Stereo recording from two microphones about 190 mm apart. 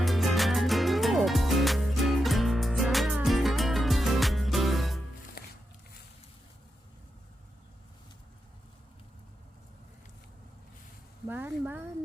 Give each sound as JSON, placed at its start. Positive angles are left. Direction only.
{"t": 0.0, "sound": "music", "side_deg": 0}
{"t": 5.4, "sound": "music", "side_deg": 55}
{"t": 11.3, "sound": "a sound", "side_deg": -10}